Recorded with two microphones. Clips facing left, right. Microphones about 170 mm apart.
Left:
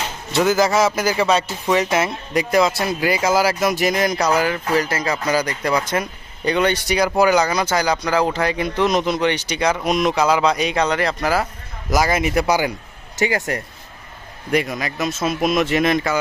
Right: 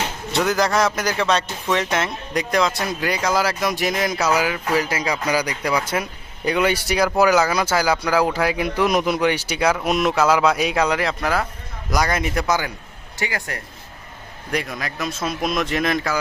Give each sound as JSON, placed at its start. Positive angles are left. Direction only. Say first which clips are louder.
{"t": 0.3, "sound": "a man's voice", "louder": "left 3 dB", "side_deg": 5}
{"t": 14.5, "sound": "speech", "louder": "left 5 dB", "side_deg": 0}